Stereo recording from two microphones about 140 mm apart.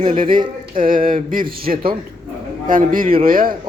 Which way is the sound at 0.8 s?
85° right.